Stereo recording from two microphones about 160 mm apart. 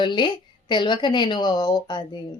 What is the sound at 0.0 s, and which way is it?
A woman's voice, 30° left (ahead or behind).